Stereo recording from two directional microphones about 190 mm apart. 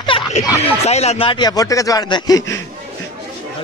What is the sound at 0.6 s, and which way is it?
Speech, 35° left (ahead or behind).